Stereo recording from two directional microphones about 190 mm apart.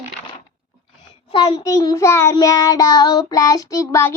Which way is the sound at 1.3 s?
25° left (ahead or behind).